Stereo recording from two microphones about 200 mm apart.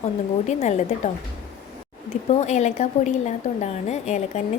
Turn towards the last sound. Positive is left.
turn(degrees=35)  # may be behind; listen again after turning